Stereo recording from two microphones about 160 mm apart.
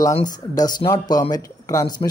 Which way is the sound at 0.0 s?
20° left (ahead or behind).